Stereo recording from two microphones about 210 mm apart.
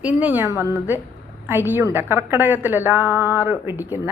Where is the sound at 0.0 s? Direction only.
5° right (ahead or behind).